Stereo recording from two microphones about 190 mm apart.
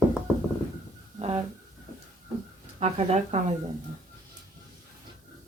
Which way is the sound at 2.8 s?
35° right (ahead or behind).